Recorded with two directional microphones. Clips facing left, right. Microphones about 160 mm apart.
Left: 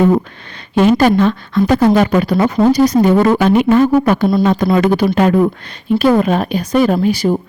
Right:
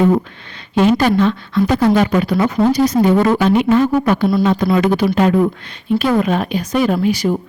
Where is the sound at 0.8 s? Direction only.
45° left (ahead or behind).